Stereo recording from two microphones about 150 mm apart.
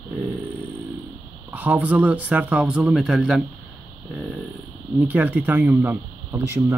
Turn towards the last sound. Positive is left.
turn(degrees=-20)  # may be behind; listen again after turning